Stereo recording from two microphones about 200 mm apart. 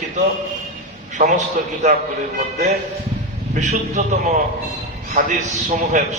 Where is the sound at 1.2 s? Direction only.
35° right (ahead or behind).